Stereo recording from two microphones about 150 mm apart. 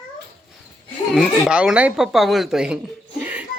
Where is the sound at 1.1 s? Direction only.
5° right (ahead or behind).